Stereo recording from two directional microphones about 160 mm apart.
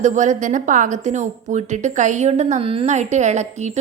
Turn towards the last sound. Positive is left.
turn(degrees=-45)  # may be behind; listen again after turning